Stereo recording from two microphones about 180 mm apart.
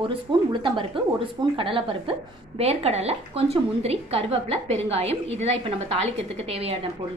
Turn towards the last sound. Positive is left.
turn(degrees=-35)  # may be behind; listen again after turning